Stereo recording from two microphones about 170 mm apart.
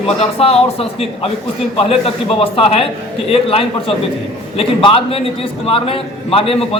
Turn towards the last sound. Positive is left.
turn(degrees=35)  # may be behind; listen again after turning